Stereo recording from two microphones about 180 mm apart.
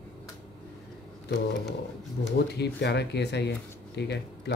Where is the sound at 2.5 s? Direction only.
70° left (ahead or behind).